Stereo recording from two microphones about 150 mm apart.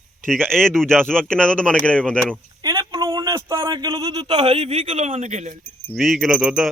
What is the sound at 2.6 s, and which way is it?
A man's voice, 25° right (ahead or behind).